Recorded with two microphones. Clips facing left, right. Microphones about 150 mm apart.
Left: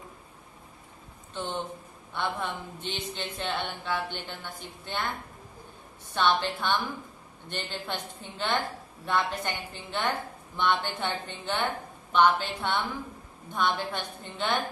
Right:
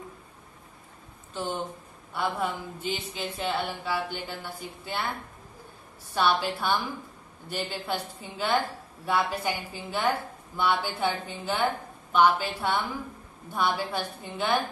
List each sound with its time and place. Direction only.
1.3 s a woman's voice: 10° right (ahead or behind)
6.1 s a woman's voice: 10° right (ahead or behind)